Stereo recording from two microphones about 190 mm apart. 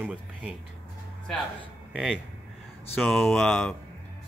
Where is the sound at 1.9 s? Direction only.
Centre (ahead or behind).